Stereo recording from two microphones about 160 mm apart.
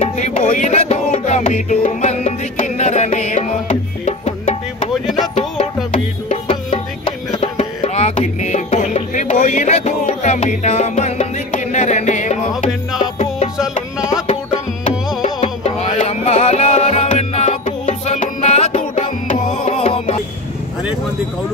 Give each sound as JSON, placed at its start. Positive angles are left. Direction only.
{"t": 0.4, "sound": "music", "side_deg": 50}
{"t": 6.2, "sound": "music", "side_deg": 35}
{"t": 15.4, "sound": "music", "side_deg": 40}